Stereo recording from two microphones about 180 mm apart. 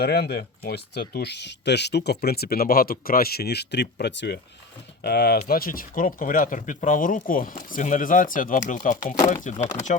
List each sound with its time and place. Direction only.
0.0 s speech: 65° left (ahead or behind)
5.0 s speech: 60° left (ahead or behind); by 9.9 s 40° left (ahead or behind)